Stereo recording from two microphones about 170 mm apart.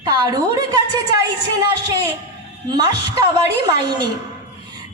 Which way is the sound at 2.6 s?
25° right (ahead or behind).